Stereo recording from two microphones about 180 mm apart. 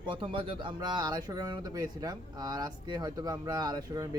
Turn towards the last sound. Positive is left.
turn(degrees=-20)  # may be behind; listen again after turning